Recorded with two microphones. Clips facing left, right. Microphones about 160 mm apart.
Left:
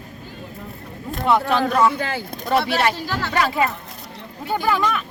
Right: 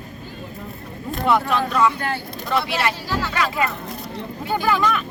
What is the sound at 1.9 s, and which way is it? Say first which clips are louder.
Speech: left 1 dB; 90° left.